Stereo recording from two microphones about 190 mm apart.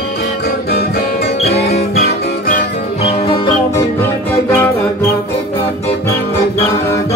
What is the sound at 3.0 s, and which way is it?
Music, 25° left (ahead or behind).